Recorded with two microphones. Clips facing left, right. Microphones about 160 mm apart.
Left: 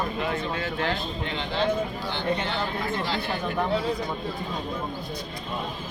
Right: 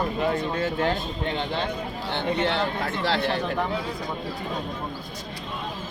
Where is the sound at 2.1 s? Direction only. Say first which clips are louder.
Right 4 dB; 70° right (ahead or behind).